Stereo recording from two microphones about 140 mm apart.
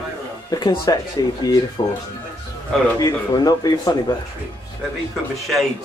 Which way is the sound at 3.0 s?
25° left (ahead or behind).